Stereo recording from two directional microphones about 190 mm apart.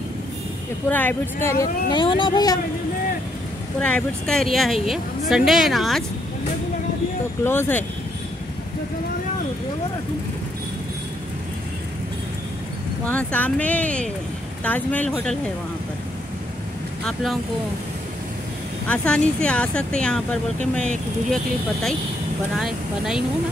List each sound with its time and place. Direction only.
0.8 s speech: 10° left (ahead or behind)
3.8 s speech: 5° left (ahead or behind)
7.4 s speech: 10° left (ahead or behind)
13.0 s speech: 5° left (ahead or behind)
17.0 s speech: centre (ahead or behind)
18.9 s speech: 5° left (ahead or behind)
22.6 s speech: centre (ahead or behind)